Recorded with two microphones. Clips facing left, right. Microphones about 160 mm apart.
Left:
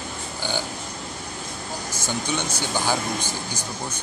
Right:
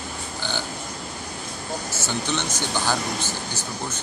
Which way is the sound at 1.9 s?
10° left (ahead or behind).